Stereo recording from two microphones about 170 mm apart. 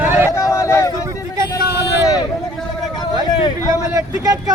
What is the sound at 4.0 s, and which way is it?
Speech, 20° right (ahead or behind).